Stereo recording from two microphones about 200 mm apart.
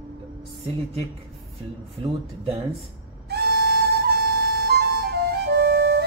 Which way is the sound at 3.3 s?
55° right (ahead or behind).